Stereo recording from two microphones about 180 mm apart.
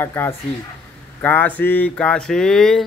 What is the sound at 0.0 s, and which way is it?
Speech, 10° left (ahead or behind).